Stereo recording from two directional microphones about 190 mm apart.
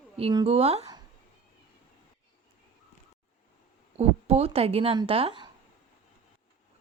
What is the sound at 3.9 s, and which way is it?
A woman's voice, 30° right (ahead or behind).